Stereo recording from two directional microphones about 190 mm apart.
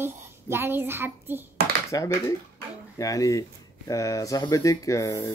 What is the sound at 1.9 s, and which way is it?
Speech, 20° left (ahead or behind).